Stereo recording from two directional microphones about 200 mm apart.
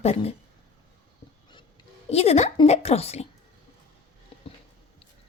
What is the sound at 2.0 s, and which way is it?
Speech, 30° left (ahead or behind).